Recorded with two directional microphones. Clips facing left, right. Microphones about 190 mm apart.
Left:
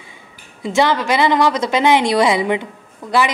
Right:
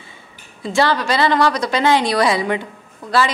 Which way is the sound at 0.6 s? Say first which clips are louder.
Left 1 dB; 20° left (ahead or behind).